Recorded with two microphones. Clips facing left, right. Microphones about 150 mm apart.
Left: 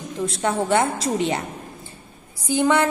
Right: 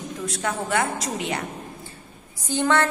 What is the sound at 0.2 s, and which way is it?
A woman's voice, 30° left (ahead or behind).